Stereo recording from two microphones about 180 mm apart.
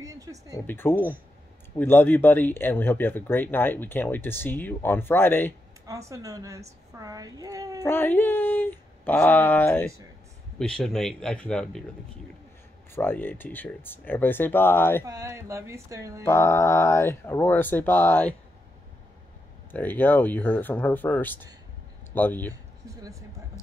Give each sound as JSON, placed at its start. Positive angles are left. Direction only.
{"t": 0.0, "sound": "a sound", "side_deg": -20}
{"t": 0.6, "sound": "speech", "side_deg": 10}
{"t": 5.9, "sound": "a woman's voice", "side_deg": -15}
{"t": 7.8, "sound": "speech", "side_deg": 10}
{"t": 12.9, "sound": "speech", "side_deg": 10}
{"t": 15.0, "sound": "speech", "side_deg": -15}
{"t": 16.3, "sound": "speech", "side_deg": 15}
{"t": 19.7, "sound": "speech", "side_deg": 10}